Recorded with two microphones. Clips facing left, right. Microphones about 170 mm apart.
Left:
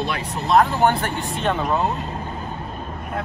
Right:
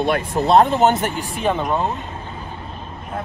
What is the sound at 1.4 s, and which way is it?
Speech, 5° right (ahead or behind).